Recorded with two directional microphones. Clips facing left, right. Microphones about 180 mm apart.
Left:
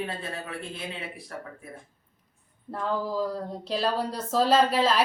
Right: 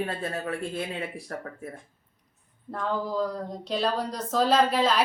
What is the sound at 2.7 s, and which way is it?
A woman's voice, centre (ahead or behind).